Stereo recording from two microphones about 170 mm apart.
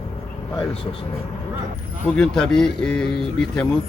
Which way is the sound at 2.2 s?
5° left (ahead or behind).